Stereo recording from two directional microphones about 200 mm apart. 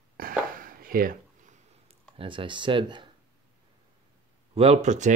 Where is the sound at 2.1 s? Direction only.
25° right (ahead or behind).